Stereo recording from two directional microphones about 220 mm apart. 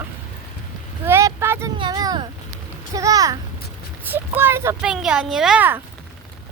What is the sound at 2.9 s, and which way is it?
Speech, 15° right (ahead or behind).